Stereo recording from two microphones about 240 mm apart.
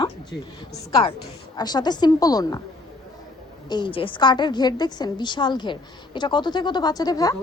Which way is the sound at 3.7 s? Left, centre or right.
Centre.